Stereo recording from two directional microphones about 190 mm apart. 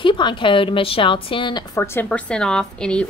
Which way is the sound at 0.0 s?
25° left (ahead or behind).